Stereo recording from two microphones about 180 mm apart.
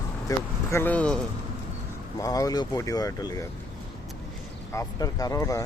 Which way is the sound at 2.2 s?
20° left (ahead or behind).